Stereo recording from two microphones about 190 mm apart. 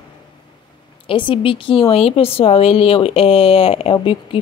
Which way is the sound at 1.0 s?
25° left (ahead or behind).